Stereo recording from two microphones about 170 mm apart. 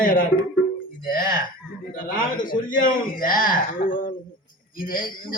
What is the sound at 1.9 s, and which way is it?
A man's voice, 55° left (ahead or behind).